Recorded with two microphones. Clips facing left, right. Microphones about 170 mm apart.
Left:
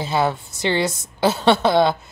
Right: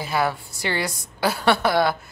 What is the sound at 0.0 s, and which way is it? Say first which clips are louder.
A woman's voice: left 3 dB; 25° left (ahead or behind).